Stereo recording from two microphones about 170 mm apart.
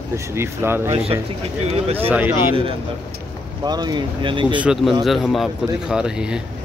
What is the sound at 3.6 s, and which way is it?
Speech, 25° right (ahead or behind).